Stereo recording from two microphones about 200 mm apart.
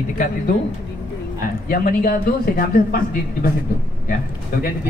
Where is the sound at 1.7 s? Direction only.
45° left (ahead or behind).